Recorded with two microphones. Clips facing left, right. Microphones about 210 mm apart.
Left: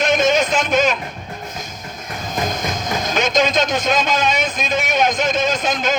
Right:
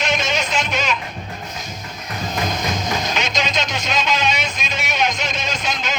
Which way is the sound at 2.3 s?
50° left (ahead or behind).